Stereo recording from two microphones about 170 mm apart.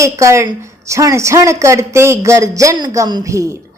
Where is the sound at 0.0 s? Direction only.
15° right (ahead or behind).